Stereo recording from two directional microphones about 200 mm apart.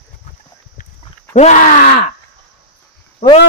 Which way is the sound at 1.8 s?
50° left (ahead or behind).